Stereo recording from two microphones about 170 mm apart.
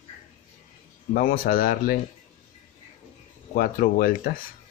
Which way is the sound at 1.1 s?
55° left (ahead or behind).